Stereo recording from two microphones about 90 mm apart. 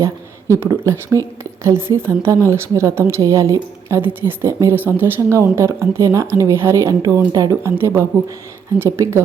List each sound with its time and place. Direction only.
0.0 s a woman's voice: 35° right (ahead or behind)
7.0 s speech: 45° right (ahead or behind)
7.6 s speech: 30° right (ahead or behind)